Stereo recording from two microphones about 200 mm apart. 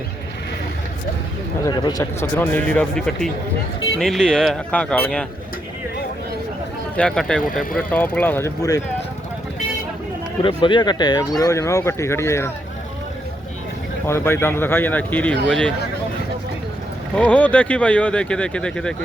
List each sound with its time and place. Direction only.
1.6 s speech: 20° left (ahead or behind)
6.9 s speech: 5° left (ahead or behind)
7.5 s speech: 45° left (ahead or behind)
7.8 s speech: 5° left (ahead or behind)
10.4 s speech: 25° left (ahead or behind)
14.1 s speech: 10° left (ahead or behind)
17.2 s speech: 5° left (ahead or behind)